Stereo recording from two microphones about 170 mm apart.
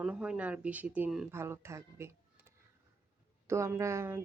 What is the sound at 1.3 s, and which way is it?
Speech, 15° right (ahead or behind).